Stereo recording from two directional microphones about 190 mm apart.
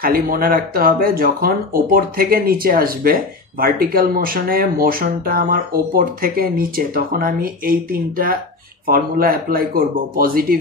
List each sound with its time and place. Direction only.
0.0 s speech: 50° right (ahead or behind)